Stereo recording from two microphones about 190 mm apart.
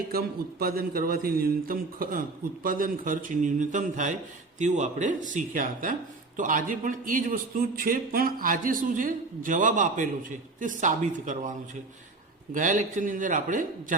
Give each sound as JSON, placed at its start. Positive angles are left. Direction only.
{"t": 0.1, "sound": "speech", "side_deg": -50}
{"t": 12.5, "sound": "speech", "side_deg": -45}